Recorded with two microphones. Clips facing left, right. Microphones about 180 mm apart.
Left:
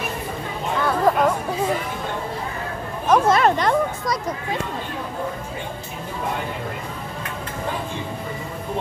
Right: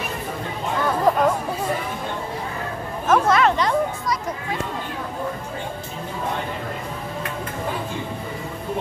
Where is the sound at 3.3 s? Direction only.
40° left (ahead or behind).